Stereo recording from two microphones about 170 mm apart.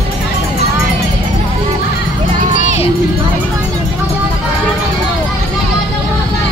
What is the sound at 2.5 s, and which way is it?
Music, 45° left (ahead or behind).